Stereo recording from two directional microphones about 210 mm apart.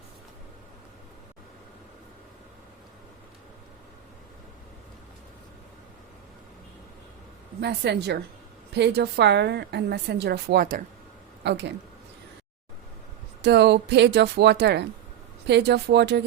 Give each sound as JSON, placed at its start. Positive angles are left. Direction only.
{"t": 7.6, "sound": "a woman's voice", "side_deg": -50}
{"t": 13.4, "sound": "a woman's voice", "side_deg": -55}